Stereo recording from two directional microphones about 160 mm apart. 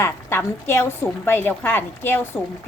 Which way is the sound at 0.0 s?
15° left (ahead or behind).